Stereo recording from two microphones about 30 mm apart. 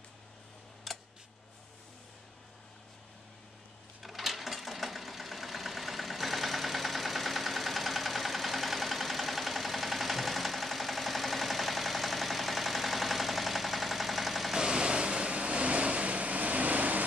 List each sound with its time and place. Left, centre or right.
0.9 s a sound: centre
4.0 s sewing machine: centre
14.5 s vehicle: right